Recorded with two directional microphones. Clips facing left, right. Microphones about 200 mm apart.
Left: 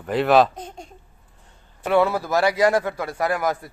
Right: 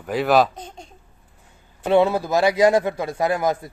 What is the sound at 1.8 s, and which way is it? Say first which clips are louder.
Speech: right 2 dB; 20° right (ahead or behind).